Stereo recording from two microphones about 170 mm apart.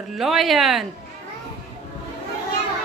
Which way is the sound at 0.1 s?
Centre (ahead or behind).